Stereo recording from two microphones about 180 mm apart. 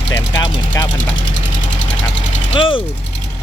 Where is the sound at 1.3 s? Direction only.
90° left.